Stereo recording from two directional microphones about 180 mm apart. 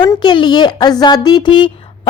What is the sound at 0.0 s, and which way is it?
A woman's voice, 25° left (ahead or behind).